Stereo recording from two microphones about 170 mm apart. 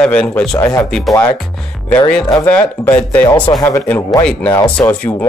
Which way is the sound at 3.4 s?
20° left (ahead or behind).